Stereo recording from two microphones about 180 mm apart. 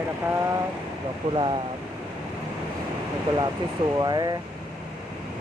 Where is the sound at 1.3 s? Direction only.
25° right (ahead or behind).